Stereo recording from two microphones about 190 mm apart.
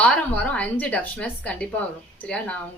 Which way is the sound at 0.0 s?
5° left (ahead or behind).